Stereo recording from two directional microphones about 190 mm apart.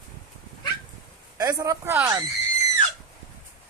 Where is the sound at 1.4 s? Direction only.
20° right (ahead or behind).